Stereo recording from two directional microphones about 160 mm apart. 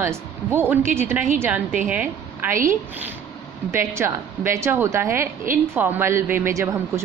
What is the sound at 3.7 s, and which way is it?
A woman's voice, 15° right (ahead or behind).